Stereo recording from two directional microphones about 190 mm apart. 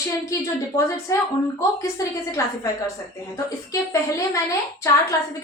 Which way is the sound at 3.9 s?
15° left (ahead or behind).